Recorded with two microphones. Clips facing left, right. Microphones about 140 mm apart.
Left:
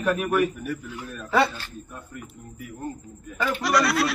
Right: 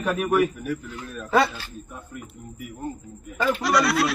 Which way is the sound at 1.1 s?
10° right (ahead or behind).